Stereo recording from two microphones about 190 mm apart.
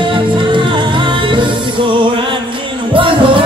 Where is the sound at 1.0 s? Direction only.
25° right (ahead or behind).